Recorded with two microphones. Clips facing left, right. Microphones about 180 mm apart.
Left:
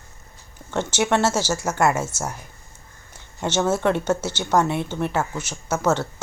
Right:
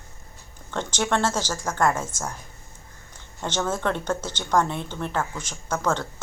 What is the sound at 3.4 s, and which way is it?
Speech, 10° left (ahead or behind).